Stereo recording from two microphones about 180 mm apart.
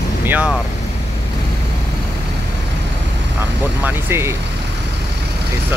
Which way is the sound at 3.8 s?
15° right (ahead or behind).